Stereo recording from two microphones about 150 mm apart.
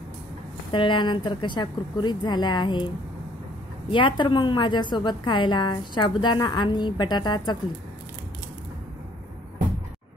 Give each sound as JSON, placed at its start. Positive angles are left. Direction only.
{"t": 0.7, "sound": "a woman's voice", "side_deg": 30}
{"t": 3.9, "sound": "a woman's voice", "side_deg": 30}